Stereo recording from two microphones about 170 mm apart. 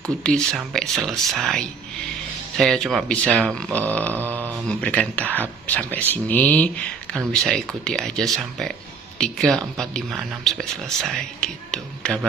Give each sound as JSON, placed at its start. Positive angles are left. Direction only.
{"t": 0.2, "sound": "speech", "side_deg": 5}